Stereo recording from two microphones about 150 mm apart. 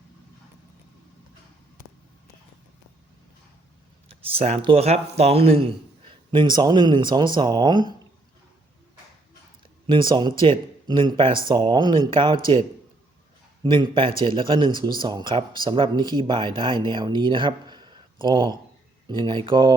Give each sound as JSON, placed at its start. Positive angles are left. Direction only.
{"t": 4.3, "sound": "speech", "side_deg": -40}
{"t": 9.8, "sound": "speech", "side_deg": -30}